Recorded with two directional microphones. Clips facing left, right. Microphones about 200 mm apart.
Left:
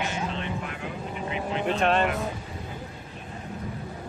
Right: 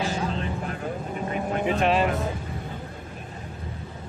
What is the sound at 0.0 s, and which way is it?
Vehicle, 35° right (ahead or behind).